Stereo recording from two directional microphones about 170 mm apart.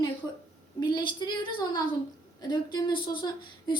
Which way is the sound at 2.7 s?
25° left (ahead or behind).